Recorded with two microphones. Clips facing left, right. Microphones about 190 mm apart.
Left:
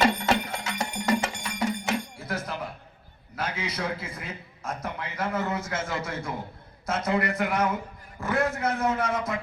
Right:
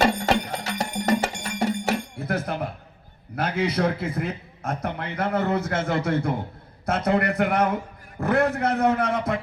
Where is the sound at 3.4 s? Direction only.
60° right (ahead or behind).